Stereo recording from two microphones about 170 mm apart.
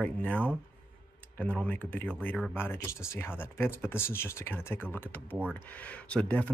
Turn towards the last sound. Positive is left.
turn(degrees=5)  # may be behind; listen again after turning